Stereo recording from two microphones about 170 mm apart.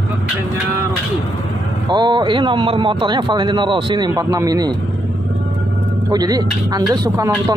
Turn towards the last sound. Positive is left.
turn(degrees=-20)  # may be behind; listen again after turning